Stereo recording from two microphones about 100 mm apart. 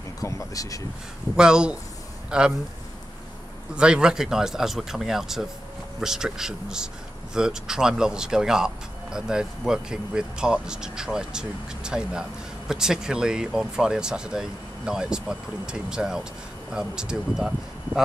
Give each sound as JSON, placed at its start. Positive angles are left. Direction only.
{"t": 0.2, "sound": "speech", "side_deg": 30}
{"t": 1.3, "sound": "speech", "side_deg": -5}
{"t": 3.7, "sound": "speech", "side_deg": -10}